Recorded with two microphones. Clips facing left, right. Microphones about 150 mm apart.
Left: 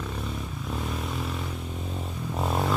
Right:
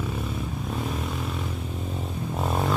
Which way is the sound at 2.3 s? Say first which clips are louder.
Even; centre (ahead or behind).